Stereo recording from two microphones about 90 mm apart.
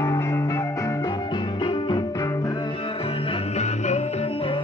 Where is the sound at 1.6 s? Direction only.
60° left (ahead or behind).